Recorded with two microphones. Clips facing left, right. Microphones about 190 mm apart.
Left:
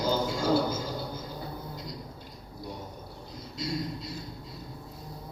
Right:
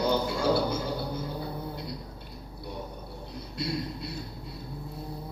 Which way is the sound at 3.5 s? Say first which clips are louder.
Right 1 dB; 65° right (ahead or behind).